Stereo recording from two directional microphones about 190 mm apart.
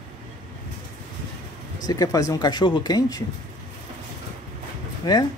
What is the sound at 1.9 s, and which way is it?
Speech, 20° left (ahead or behind).